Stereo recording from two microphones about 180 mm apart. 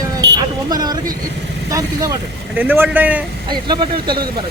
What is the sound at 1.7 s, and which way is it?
Speech, 20° right (ahead or behind).